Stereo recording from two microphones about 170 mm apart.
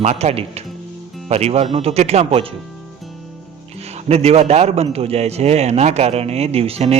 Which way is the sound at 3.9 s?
40° right (ahead or behind).